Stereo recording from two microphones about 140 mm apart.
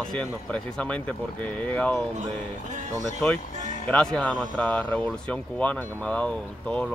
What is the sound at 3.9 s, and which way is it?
Speech, 5° left (ahead or behind).